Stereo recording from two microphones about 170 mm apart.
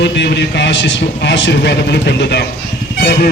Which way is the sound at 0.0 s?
90° left.